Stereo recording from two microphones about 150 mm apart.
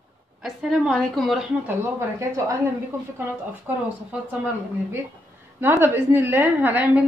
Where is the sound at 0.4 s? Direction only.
5° right (ahead or behind).